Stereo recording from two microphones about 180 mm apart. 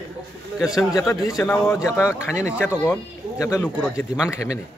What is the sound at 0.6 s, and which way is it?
Speech, centre (ahead or behind).